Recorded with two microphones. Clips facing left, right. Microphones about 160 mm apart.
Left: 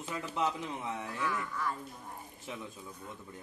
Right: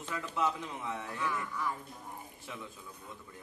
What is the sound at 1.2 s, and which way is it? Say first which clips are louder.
Speech: even; 15° right (ahead or behind).